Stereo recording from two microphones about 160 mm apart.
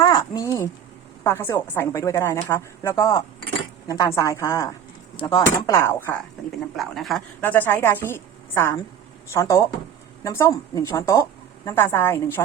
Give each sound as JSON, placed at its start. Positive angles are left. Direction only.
{"t": 0.0, "sound": "a sound", "side_deg": 25}
{"t": 1.2, "sound": "a woman's voice", "side_deg": 15}
{"t": 5.6, "sound": "a woman's voice", "side_deg": 20}
{"t": 6.7, "sound": "speech", "side_deg": 0}
{"t": 7.4, "sound": "a woman's voice", "side_deg": 10}